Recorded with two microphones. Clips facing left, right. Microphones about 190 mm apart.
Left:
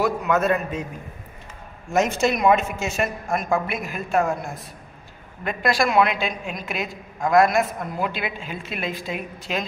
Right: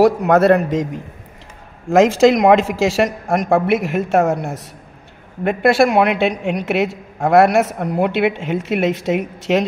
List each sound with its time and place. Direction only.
0.0 s a man's voice: 85° right
1.9 s speech: 90° right
5.4 s a woman's voice: 65° right (ahead or behind)